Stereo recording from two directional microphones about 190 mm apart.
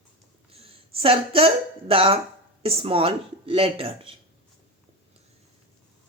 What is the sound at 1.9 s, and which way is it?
Speech, 30° right (ahead or behind).